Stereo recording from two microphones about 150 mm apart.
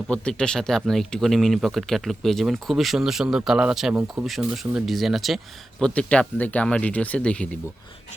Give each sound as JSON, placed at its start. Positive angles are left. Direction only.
{"t": 0.1, "sound": "speech", "side_deg": 5}